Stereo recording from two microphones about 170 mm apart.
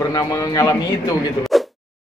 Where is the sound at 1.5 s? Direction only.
Centre (ahead or behind).